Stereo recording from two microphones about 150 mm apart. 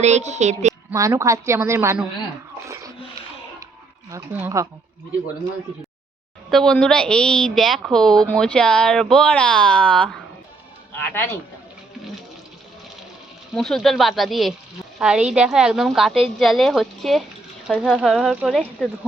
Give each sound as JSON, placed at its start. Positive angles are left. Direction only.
{"t": 0.0, "sound": "a woman's voice", "side_deg": -50}
{"t": 0.9, "sound": "a woman's voice", "side_deg": -20}
{"t": 4.4, "sound": "speech", "side_deg": -20}
{"t": 6.5, "sound": "a woman's voice", "side_deg": 5}
{"t": 13.5, "sound": "a woman's voice", "side_deg": 0}